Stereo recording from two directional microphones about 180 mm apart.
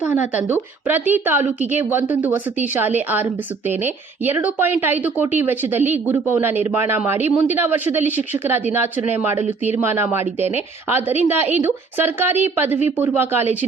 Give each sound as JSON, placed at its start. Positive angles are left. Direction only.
{"t": 0.0, "sound": "a woman's voice", "side_deg": -10}